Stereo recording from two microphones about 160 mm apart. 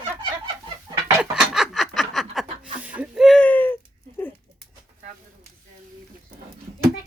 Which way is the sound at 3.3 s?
10° left (ahead or behind).